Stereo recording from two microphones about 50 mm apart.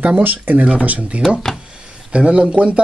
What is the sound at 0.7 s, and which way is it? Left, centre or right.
Speech, right.